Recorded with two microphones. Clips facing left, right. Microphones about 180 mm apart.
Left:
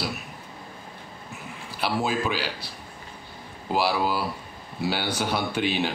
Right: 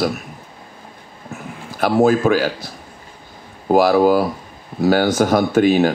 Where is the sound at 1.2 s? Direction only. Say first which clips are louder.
Right 10 dB; 45° right (ahead or behind).